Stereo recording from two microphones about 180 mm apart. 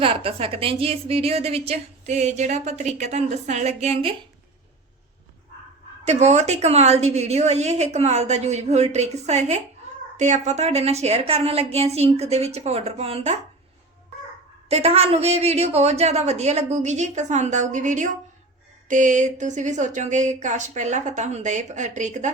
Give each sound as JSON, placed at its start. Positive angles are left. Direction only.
{"t": 0.0, "sound": "a woman's voice", "side_deg": -30}
{"t": 6.1, "sound": "a woman's voice", "side_deg": -40}
{"t": 14.7, "sound": "a woman's voice", "side_deg": -35}